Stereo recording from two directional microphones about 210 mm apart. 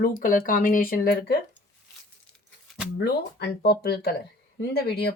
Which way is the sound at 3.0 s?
50° left (ahead or behind).